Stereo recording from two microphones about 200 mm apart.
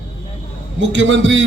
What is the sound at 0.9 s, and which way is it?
Speech, 65° right (ahead or behind).